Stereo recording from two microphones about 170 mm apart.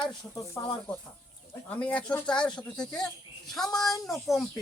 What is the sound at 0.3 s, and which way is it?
Speech, 15° left (ahead or behind).